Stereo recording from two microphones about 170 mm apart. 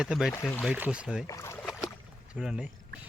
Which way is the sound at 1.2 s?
20° left (ahead or behind).